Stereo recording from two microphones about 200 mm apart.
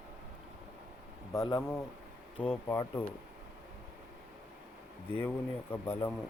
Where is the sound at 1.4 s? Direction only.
20° left (ahead or behind).